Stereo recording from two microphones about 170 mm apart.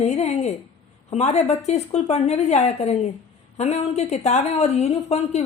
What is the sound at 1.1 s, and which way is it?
A woman's voice, 40° left (ahead or behind).